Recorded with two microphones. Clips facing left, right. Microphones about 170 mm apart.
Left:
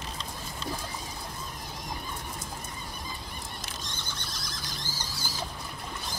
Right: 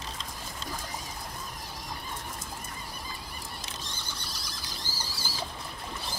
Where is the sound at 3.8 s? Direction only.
35° right (ahead or behind).